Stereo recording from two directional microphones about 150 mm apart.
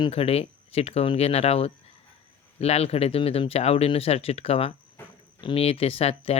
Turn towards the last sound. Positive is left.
turn(degrees=45)  # may be behind; listen again after turning